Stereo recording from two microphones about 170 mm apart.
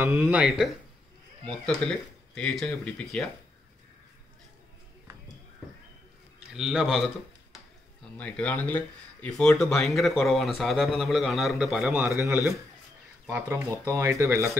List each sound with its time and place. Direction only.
0.0 s a man's voice: 10° right (ahead or behind)
6.5 s a man's voice: 5° right (ahead or behind)